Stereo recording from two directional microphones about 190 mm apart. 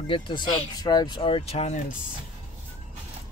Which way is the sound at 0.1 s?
25° left (ahead or behind).